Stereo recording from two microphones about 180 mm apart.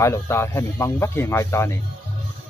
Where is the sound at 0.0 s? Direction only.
15° left (ahead or behind).